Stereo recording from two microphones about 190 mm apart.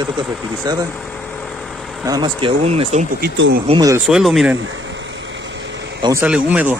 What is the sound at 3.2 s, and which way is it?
Speech, 55° right (ahead or behind).